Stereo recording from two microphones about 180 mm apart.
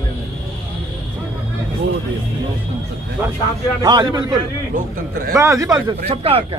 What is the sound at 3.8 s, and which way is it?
Speech, 25° right (ahead or behind).